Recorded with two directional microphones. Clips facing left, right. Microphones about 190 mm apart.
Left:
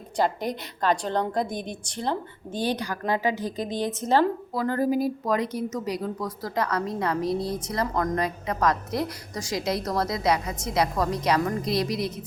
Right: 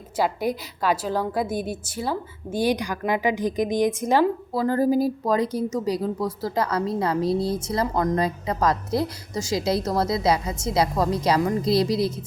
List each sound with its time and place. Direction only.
0.2 s a woman's voice: 10° right (ahead or behind)
4.5 s speech: 30° right (ahead or behind)